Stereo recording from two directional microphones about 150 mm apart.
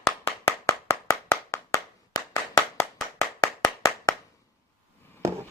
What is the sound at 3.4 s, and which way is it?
Clapping, 20° left (ahead or behind).